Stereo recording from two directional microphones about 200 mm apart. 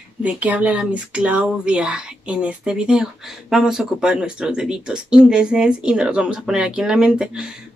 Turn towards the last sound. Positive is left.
turn(degrees=-5)  # may be behind; listen again after turning